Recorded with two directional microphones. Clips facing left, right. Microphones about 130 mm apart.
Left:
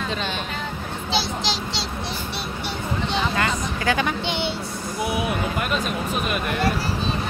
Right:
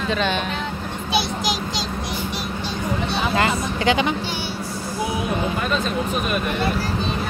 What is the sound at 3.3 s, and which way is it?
Speech, 25° right (ahead or behind).